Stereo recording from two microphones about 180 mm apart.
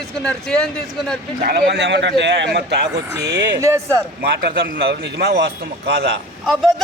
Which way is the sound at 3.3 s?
15° right (ahead or behind).